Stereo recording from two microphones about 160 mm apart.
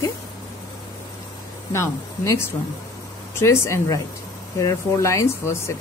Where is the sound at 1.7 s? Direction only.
15° left (ahead or behind).